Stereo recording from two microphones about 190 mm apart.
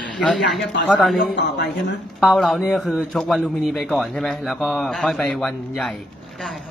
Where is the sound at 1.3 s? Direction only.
65° left (ahead or behind).